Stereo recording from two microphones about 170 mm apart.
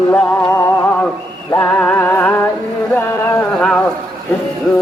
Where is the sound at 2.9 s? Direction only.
10° left (ahead or behind).